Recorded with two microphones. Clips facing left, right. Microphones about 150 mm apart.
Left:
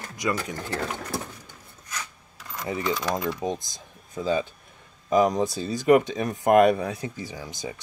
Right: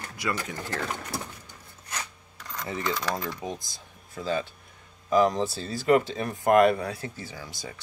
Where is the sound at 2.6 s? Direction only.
15° left (ahead or behind).